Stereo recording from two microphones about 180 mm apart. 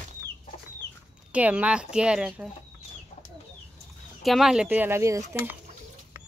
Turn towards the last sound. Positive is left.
turn(degrees=-15)  # may be behind; listen again after turning